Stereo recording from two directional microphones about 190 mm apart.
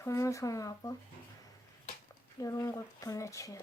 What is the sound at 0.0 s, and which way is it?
Speech, 15° left (ahead or behind).